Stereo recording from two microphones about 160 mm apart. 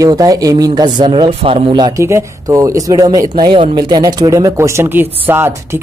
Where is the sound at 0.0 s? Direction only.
25° right (ahead or behind).